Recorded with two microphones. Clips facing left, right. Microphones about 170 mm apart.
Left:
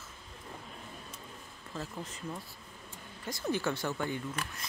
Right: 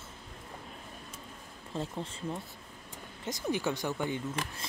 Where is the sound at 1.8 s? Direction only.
30° right (ahead or behind).